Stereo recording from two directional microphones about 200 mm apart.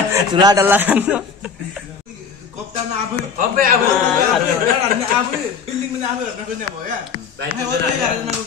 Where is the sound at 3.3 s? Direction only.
45° right (ahead or behind).